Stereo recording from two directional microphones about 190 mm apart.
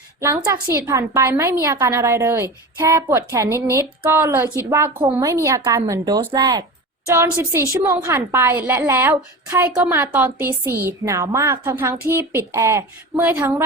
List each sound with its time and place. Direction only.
0.2 s a woman's voice: 15° right (ahead or behind)